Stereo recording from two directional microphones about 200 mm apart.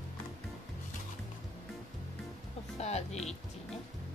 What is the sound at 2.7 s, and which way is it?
Music, 35° left (ahead or behind).